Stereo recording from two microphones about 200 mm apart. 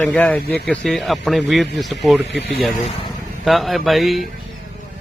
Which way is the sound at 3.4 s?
Centre (ahead or behind).